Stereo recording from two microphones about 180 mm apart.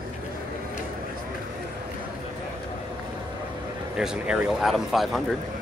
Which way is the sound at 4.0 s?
5° right (ahead or behind).